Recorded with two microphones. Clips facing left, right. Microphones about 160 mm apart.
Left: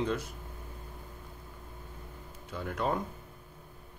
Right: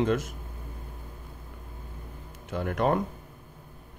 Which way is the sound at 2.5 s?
70° right (ahead or behind).